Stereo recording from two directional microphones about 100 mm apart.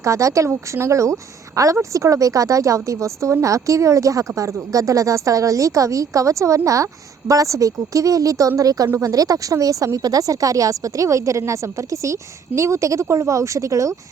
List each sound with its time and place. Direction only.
0.0 s a woman's voice: 30° right (ahead or behind)